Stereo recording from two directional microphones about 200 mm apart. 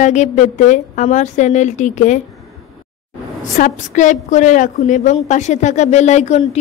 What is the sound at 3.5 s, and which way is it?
A woman's voice, 40° left (ahead or behind).